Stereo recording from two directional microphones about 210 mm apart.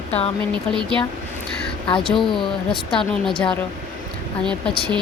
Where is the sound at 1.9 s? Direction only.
25° left (ahead or behind).